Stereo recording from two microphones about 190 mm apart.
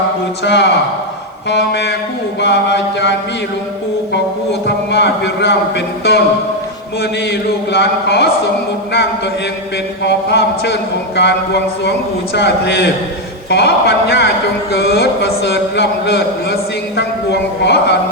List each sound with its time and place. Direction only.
0.4 s a man's voice: 65° left (ahead or behind)
4.6 s a man's voice: 65° left (ahead or behind)
11.8 s a man's voice: 60° left (ahead or behind)
17.6 s a man's voice: 65° left (ahead or behind)